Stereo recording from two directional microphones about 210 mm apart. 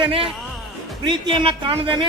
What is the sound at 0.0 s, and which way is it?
Speech, 25° right (ahead or behind).